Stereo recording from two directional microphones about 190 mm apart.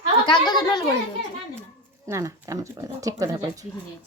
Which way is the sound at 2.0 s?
15° right (ahead or behind).